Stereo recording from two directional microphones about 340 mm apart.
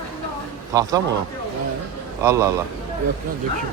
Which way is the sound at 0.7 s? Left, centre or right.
Centre.